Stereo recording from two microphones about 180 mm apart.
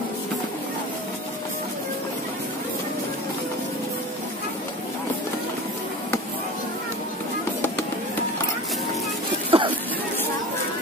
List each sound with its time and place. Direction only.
9.5 s chatter: 30° right (ahead or behind)